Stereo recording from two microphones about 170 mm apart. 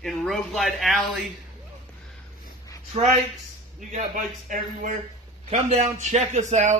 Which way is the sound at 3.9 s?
50° right (ahead or behind).